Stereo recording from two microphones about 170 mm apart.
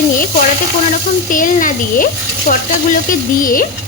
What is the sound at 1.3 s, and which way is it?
A woman's voice, 55° left (ahead or behind).